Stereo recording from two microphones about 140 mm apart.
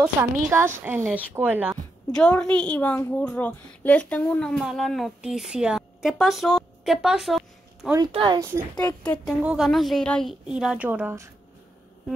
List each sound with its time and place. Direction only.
0.2 s a woman's voice: 20° right (ahead or behind)
2.1 s a woman's voice: 5° left (ahead or behind)
8.0 s speech: 35° right (ahead or behind)
8.4 s a woman's voice: 20° right (ahead or behind)
8.8 s a woman's voice: 15° left (ahead or behind)
9.4 s a woman's voice: 5° right (ahead or behind)
10.4 s a woman's voice: 5° right (ahead or behind)